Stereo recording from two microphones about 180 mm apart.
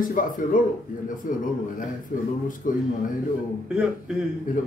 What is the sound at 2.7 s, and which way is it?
Speech, 50° left (ahead or behind).